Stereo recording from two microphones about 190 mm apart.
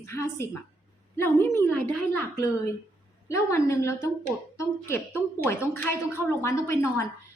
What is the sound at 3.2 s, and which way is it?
A woman's voice, 15° left (ahead or behind).